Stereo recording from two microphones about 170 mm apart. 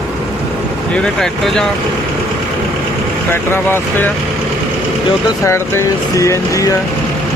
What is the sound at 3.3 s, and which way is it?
Speech, 15° left (ahead or behind).